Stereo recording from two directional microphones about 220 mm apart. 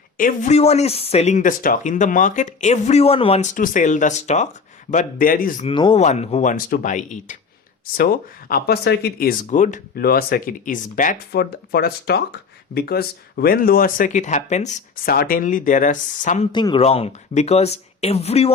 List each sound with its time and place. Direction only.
0.2 s speech: 35° left (ahead or behind)
5.6 s speech: 25° left (ahead or behind)
16.5 s speech: 20° left (ahead or behind)